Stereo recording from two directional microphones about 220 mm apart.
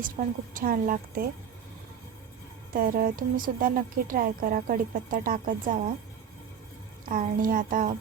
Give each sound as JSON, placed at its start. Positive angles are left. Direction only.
{"t": 0.2, "sound": "a woman's voice", "side_deg": -40}
{"t": 2.7, "sound": "a woman's voice", "side_deg": -40}
{"t": 7.0, "sound": "a woman's voice", "side_deg": -40}